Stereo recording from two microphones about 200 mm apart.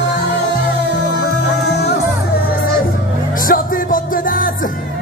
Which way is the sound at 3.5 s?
45° left (ahead or behind).